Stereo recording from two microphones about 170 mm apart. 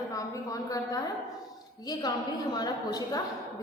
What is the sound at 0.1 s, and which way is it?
A woman's voice, 20° left (ahead or behind).